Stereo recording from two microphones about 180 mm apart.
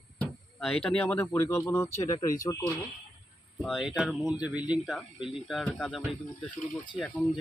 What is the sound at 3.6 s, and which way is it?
Speech, centre (ahead or behind).